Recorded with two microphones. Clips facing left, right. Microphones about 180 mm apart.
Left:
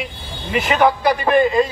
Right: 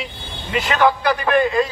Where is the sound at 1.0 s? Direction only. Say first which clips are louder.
Left 2 dB; 20° left (ahead or behind).